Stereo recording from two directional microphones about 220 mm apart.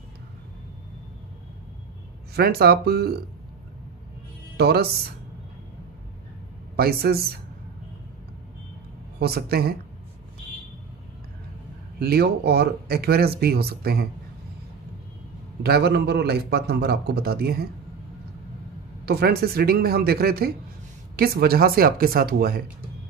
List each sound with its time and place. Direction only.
2.3 s speech: 45° right (ahead or behind)
4.6 s speech: 45° right (ahead or behind)
6.8 s speech: 45° right (ahead or behind)
9.2 s speech: 45° right (ahead or behind)
12.0 s speech: 45° right (ahead or behind)
15.6 s speech: 45° right (ahead or behind)
19.0 s speech: 45° right (ahead or behind)